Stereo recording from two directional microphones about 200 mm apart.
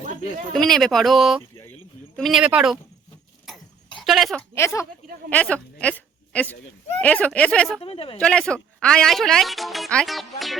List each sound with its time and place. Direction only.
0.5 s speech: centre (ahead or behind)
4.0 s speech: centre (ahead or behind)
4.5 s a woman's voice: 15° left (ahead or behind)
7.8 s a woman's voice: 30° left (ahead or behind)
8.2 s speech: 5° left (ahead or behind)